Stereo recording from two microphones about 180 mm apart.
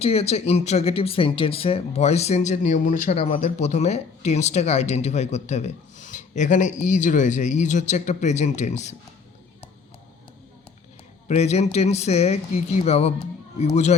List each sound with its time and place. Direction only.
0.0 s speech: 35° left (ahead or behind)
11.3 s speech: 35° left (ahead or behind)